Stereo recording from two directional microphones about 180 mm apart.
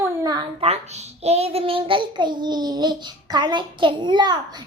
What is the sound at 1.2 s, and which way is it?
A child's voice, 35° right (ahead or behind).